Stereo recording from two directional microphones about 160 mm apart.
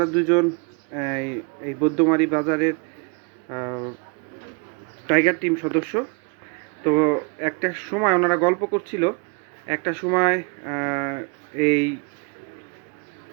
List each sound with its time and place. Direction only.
0.0 s speech: 10° left (ahead or behind)
5.0 s speech: 10° left (ahead or behind)